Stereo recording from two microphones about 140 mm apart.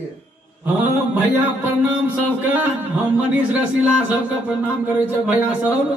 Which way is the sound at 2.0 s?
10° right (ahead or behind).